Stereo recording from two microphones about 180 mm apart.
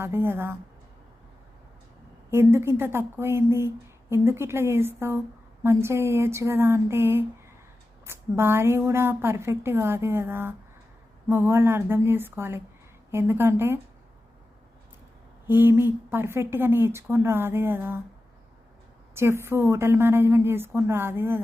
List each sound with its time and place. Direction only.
0.0 s a woman's voice: 15° right (ahead or behind)
2.3 s a woman's voice: 15° right (ahead or behind)
15.4 s a woman's voice: 10° right (ahead or behind)
19.1 s a woman's voice: 15° right (ahead or behind)